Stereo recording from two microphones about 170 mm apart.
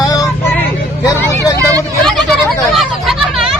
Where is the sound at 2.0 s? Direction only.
Centre (ahead or behind).